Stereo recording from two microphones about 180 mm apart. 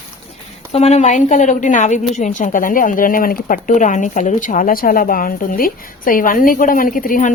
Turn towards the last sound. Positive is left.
turn(degrees=50)  # may be behind; listen again after turning